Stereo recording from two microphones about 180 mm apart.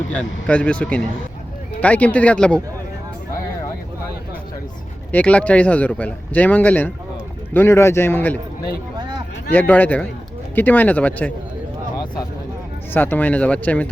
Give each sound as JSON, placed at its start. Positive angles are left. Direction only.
{"t": 0.1, "sound": "speech", "side_deg": 5}
{"t": 5.1, "sound": "speech", "side_deg": 5}
{"t": 9.0, "sound": "a sound", "side_deg": -25}
{"t": 9.5, "sound": "speech", "side_deg": 10}
{"t": 12.9, "sound": "speech", "side_deg": 10}